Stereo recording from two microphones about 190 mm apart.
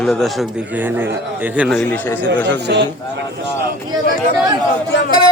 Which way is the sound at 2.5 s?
60° right (ahead or behind).